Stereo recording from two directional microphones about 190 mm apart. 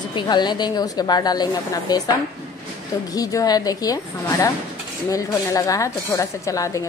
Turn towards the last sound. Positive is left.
turn(degrees=15)  # may be behind; listen again after turning